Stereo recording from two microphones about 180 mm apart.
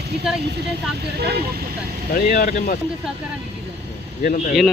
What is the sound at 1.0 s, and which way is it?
Speech, 65° right (ahead or behind).